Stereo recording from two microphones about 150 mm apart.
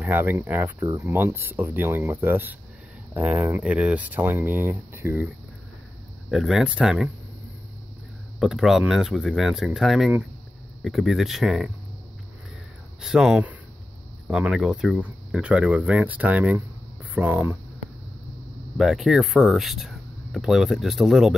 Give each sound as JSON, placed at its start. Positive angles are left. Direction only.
{"t": 0.0, "sound": "speech", "side_deg": -10}
{"t": 6.3, "sound": "speech", "side_deg": 0}
{"t": 8.4, "sound": "speech", "side_deg": 0}
{"t": 13.0, "sound": "speech", "side_deg": -5}
{"t": 18.8, "sound": "speech", "side_deg": 0}